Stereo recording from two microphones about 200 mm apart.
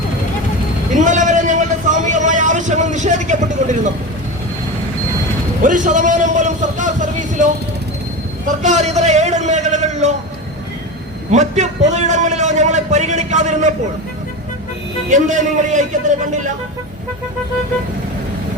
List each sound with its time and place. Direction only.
0.9 s vehicle: 40° right (ahead or behind)
5.6 s a sound: 40° right (ahead or behind)
8.4 s a man's voice: 35° right (ahead or behind)
11.3 s a man's voice: 35° right (ahead or behind)
15.1 s a man's voice: 40° right (ahead or behind)